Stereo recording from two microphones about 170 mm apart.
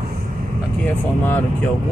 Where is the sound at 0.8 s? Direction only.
10° left (ahead or behind).